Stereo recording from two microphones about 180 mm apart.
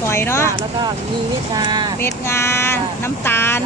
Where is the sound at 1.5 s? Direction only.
25° right (ahead or behind).